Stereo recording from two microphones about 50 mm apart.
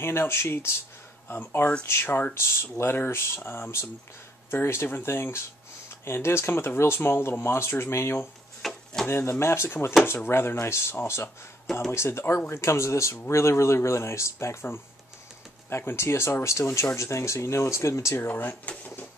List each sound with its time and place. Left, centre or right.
0.0 s speech: left
8.6 s a sound: centre
9.0 s speech: left
13.3 s speech: left
16.0 s speech: left
18.2 s speech: left